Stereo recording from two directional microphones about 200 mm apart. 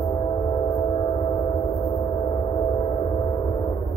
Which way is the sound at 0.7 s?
25° left (ahead or behind).